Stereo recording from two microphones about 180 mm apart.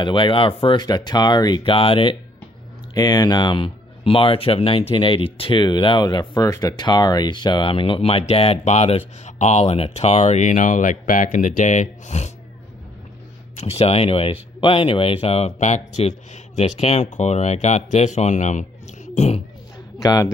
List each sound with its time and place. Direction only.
0.0 s speech: 30° left (ahead or behind)
13.6 s speech: 35° left (ahead or behind)
20.0 s speech: 20° left (ahead or behind)